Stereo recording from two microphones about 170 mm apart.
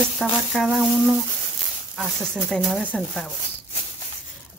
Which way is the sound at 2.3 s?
Centre (ahead or behind).